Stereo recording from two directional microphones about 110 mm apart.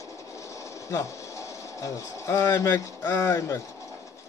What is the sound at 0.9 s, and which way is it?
Speech, 30° left (ahead or behind).